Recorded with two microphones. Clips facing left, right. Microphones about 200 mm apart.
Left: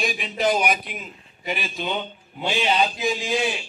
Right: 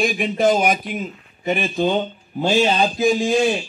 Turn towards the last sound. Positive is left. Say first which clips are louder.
# right 7 dB
turn(degrees=-45)  # may be behind; listen again after turning